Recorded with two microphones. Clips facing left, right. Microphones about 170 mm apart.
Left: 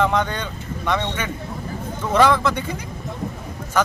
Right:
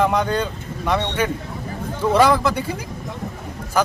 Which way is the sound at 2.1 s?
10° right (ahead or behind).